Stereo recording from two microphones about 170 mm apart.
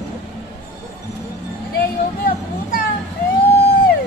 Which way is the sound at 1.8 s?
60° left (ahead or behind).